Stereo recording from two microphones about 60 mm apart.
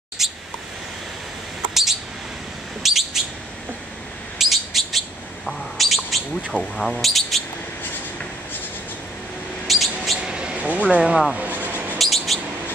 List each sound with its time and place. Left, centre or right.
0.2 s bird: centre
1.7 s bird: centre
4.4 s bird: centre
6.5 s speech: centre
9.7 s a sound: centre
10.1 s a sound: centre
11.3 s vehicle: right
12.0 s bird: centre